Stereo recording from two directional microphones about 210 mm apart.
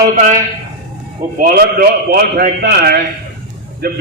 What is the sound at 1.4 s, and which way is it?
A man's voice, 45° right (ahead or behind).